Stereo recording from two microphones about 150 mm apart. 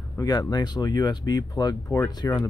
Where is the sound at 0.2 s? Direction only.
25° left (ahead or behind).